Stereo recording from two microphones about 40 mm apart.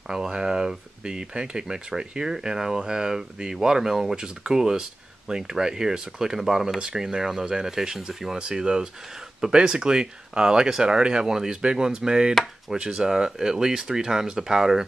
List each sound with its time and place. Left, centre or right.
0.3 s speech: centre